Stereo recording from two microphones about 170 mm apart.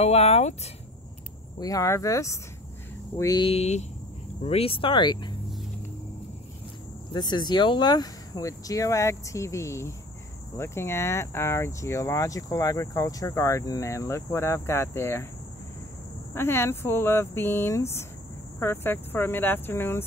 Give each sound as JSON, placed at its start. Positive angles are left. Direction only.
{"t": 0.0, "sound": "speech", "side_deg": 40}
{"t": 1.6, "sound": "speech", "side_deg": 20}
{"t": 3.4, "sound": "speech", "side_deg": 35}
{"t": 7.1, "sound": "speech", "side_deg": 25}
{"t": 16.3, "sound": "speech", "side_deg": 15}